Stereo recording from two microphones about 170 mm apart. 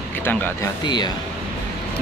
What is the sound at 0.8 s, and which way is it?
Speech, 25° left (ahead or behind).